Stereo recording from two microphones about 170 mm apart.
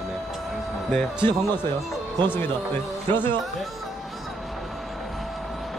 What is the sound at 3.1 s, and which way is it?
Speech, 25° right (ahead or behind).